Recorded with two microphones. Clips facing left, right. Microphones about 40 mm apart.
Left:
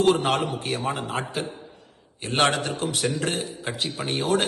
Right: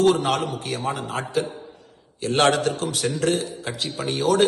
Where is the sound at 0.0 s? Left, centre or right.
Left.